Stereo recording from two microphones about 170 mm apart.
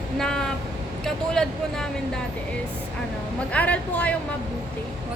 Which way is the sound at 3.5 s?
10° left (ahead or behind).